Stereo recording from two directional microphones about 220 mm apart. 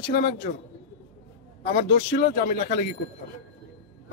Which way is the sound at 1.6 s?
45° left (ahead or behind).